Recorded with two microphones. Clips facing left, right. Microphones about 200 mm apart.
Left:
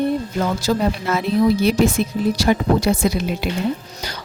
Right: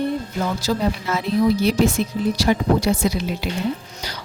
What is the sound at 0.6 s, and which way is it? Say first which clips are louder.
A woman's voice: left 2 dB; 55° left (ahead or behind).